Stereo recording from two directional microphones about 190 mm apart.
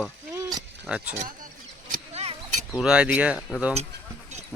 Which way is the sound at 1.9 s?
35° right (ahead or behind).